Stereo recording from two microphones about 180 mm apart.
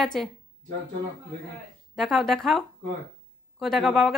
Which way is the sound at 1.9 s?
Centre (ahead or behind).